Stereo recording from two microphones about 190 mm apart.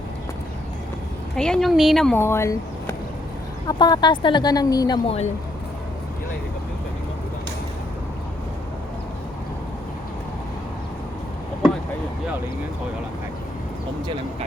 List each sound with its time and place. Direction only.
1.4 s speech: 5° left (ahead or behind); by 4.9 s 20° left (ahead or behind)
5.0 s speech: 35° left (ahead or behind)